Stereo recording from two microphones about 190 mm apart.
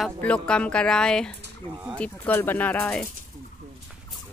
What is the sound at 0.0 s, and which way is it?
Speech, 5° left (ahead or behind).